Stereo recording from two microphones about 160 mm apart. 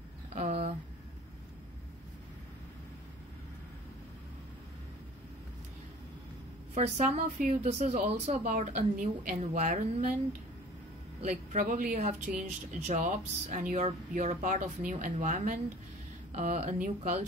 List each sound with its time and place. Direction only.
0.3 s a sound: 45° right (ahead or behind)
6.7 s speech: 45° right (ahead or behind)
11.2 s speech: 50° right (ahead or behind)